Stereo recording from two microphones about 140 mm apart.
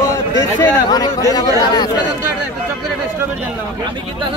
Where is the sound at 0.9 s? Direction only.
25° left (ahead or behind).